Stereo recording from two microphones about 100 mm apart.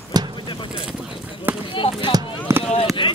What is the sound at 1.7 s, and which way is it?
Speech, 60° left (ahead or behind).